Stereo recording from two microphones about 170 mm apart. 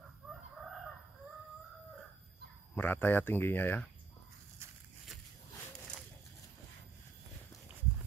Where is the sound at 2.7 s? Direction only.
10° left (ahead or behind).